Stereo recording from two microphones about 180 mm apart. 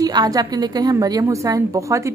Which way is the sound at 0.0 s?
20° right (ahead or behind).